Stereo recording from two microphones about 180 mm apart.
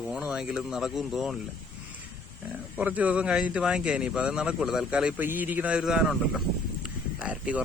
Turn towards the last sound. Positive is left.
turn(degrees=-10)  # may be behind; listen again after turning